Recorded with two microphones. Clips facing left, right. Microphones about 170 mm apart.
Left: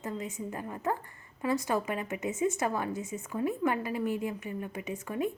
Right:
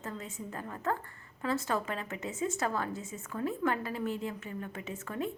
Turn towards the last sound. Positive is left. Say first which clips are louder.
# left 4 dB
turn(degrees=15)  # may be behind; listen again after turning